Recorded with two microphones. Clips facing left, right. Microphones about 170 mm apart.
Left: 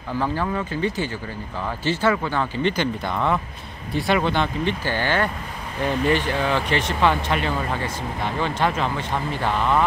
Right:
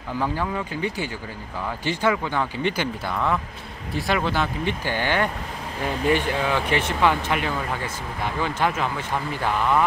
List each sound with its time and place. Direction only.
0.2 s speech: 10° right (ahead or behind)
4.8 s speech: 15° right (ahead or behind)